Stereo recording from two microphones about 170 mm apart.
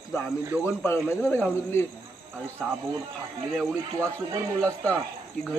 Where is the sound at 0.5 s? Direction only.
10° right (ahead or behind).